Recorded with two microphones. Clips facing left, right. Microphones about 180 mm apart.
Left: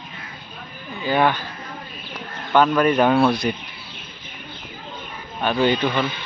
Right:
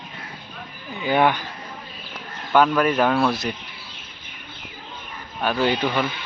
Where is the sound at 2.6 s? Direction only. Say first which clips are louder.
Left 2 dB; centre (ahead or behind).